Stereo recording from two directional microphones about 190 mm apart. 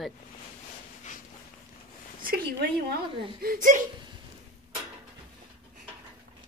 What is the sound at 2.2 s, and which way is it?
Speech, 55° right (ahead or behind).